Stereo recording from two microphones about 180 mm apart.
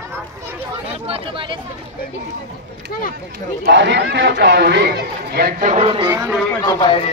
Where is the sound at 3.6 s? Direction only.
75° right (ahead or behind); by 5.7 s 60° right (ahead or behind).